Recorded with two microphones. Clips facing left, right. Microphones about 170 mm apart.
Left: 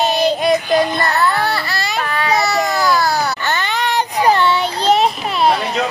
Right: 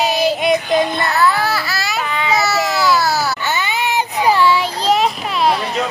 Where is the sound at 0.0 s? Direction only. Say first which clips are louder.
Left 1 dB; 5° right (ahead or behind).